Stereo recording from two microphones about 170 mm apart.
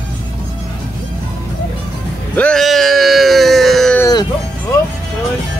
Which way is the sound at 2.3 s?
5° left (ahead or behind).